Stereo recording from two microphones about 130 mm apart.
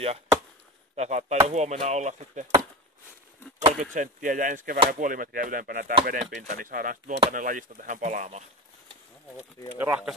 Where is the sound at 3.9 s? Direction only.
85° right; by 8.4 s 65° right (ahead or behind).